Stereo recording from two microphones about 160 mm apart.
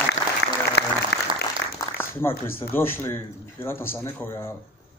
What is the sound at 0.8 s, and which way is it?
Applause, 90° left.